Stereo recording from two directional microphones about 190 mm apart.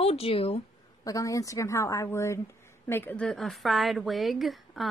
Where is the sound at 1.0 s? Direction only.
15° left (ahead or behind).